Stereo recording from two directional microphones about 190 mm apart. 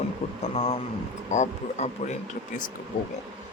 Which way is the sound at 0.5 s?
30° left (ahead or behind).